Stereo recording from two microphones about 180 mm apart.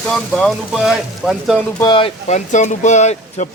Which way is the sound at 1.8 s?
25° left (ahead or behind).